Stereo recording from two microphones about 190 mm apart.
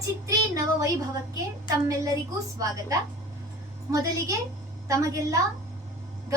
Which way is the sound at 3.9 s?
15° right (ahead or behind).